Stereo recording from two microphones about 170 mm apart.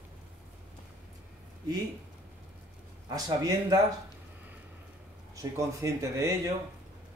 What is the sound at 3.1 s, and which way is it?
Speech, 20° right (ahead or behind).